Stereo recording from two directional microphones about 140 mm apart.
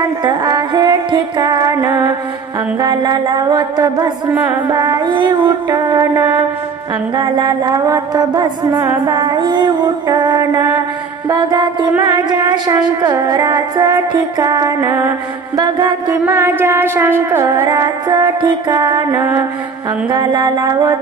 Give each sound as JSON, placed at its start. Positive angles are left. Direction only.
{"t": 0.2, "sound": "music", "side_deg": -30}
{"t": 7.2, "sound": "music", "side_deg": -30}
{"t": 16.3, "sound": "music", "side_deg": -15}
{"t": 20.1, "sound": "music", "side_deg": -30}